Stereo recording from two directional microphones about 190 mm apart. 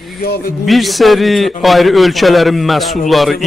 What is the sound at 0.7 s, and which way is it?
Speech, centre (ahead or behind).